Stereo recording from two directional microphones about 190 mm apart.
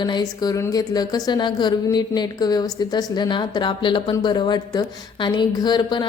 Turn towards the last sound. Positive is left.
turn(degrees=25)  # may be behind; listen again after turning